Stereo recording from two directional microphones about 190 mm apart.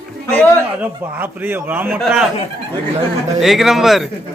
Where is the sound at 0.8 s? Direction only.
10° right (ahead or behind).